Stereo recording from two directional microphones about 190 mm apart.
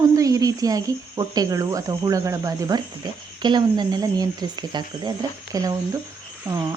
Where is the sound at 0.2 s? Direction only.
20° right (ahead or behind).